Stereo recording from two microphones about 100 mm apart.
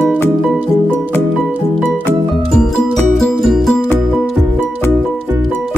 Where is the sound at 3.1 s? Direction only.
Centre (ahead or behind).